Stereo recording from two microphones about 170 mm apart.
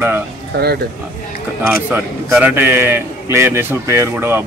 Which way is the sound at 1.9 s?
10° right (ahead or behind).